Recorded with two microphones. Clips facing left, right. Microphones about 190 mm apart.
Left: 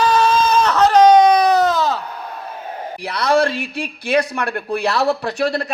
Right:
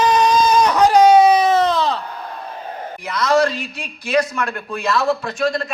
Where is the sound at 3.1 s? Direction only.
60° left (ahead or behind).